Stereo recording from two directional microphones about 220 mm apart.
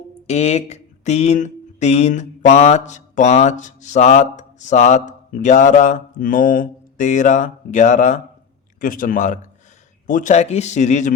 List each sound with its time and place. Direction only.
0.3 s speech: 30° left (ahead or behind)